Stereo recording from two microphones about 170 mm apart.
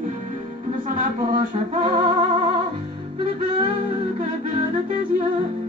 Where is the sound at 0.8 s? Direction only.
50° right (ahead or behind).